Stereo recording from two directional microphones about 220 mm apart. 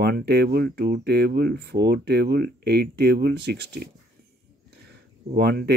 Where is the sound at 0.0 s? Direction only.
50° right (ahead or behind).